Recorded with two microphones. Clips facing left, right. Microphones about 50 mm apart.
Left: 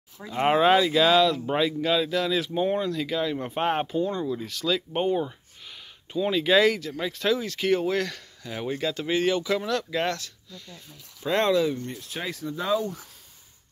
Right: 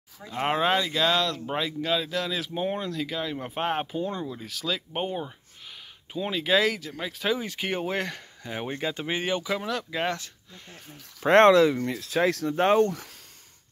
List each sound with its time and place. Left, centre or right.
0.2 s speech: centre
3.9 s speech: centre
6.1 s speech: centre
7.3 s speech: centre
10.2 s speech: right
11.2 s speech: right
12.5 s speech: right